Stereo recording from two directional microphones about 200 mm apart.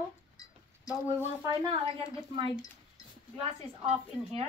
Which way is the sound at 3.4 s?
30° right (ahead or behind).